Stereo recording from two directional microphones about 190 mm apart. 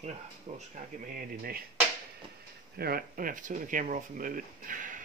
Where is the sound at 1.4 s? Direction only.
50° right (ahead or behind).